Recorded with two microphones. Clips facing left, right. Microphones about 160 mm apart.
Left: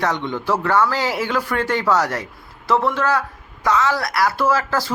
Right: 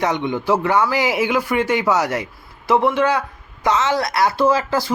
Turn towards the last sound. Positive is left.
turn(degrees=-15)  # may be behind; listen again after turning